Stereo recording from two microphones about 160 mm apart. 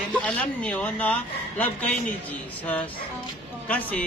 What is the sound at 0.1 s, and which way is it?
A man's voice, 10° left (ahead or behind).